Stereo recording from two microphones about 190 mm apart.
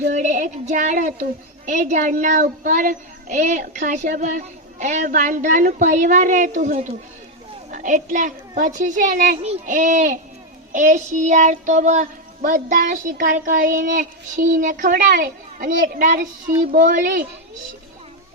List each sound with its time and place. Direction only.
0.1 s a woman's voice: 40° right (ahead or behind)
10.7 s child singing: 40° right (ahead or behind)